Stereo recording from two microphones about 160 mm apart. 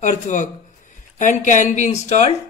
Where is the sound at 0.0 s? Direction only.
50° left (ahead or behind).